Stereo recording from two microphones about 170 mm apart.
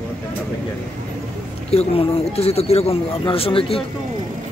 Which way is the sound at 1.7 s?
35° left (ahead or behind).